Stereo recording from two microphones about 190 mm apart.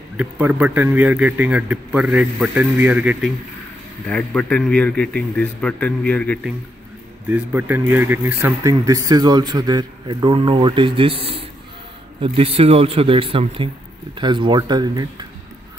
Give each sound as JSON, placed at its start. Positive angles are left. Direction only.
{"t": 0.2, "sound": "a man's voice", "side_deg": -10}
{"t": 4.1, "sound": "a man's voice", "side_deg": 5}
{"t": 7.2, "sound": "a man's voice", "side_deg": -10}